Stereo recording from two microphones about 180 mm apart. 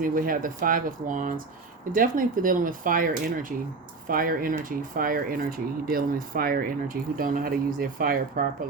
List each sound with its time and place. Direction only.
0.0 s speech: 50° right (ahead or behind)
4.1 s speech: 50° right (ahead or behind)